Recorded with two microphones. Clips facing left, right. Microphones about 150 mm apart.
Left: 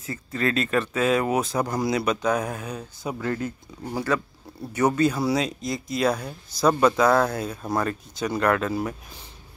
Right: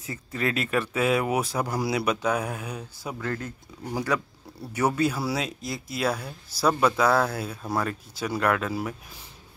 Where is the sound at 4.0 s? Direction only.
15° right (ahead or behind).